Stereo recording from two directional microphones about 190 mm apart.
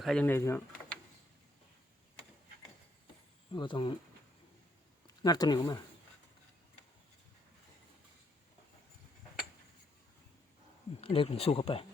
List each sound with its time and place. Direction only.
0.0 s speech: 5° left (ahead or behind)
3.5 s speech: 25° left (ahead or behind)
5.0 s speech: 20° left (ahead or behind)
11.0 s speech: 30° left (ahead or behind)